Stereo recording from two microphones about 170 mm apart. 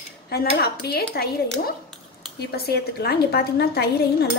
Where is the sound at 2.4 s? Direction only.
70° left (ahead or behind).